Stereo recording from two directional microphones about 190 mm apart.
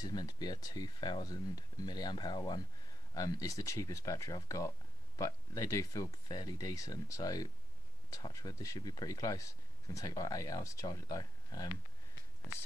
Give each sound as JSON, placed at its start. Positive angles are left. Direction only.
{"t": 0.0, "sound": "speech", "side_deg": 20}